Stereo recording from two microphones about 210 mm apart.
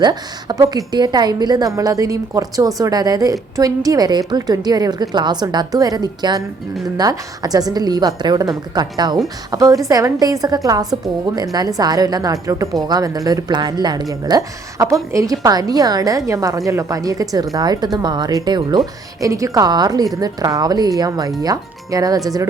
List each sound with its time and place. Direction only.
0.0 s a woman's voice: 20° right (ahead or behind)